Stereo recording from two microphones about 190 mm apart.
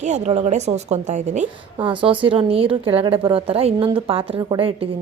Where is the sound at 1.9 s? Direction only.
25° right (ahead or behind).